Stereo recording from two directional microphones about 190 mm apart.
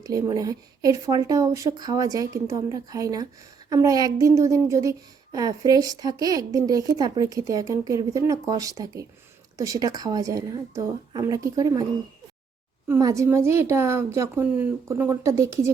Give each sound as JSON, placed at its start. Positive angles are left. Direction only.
{"t": 0.0, "sound": "a woman's voice", "side_deg": -20}
{"t": 12.9, "sound": "a woman's voice", "side_deg": -15}